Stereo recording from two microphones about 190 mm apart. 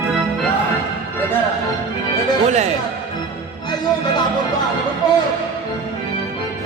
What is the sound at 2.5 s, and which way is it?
Music, 35° right (ahead or behind).